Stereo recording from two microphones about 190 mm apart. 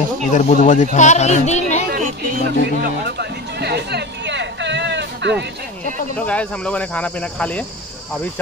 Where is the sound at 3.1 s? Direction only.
60° right (ahead or behind).